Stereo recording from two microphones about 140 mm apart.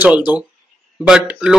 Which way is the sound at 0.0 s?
10° right (ahead or behind).